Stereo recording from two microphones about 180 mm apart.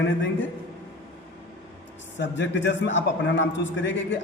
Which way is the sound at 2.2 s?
85° left.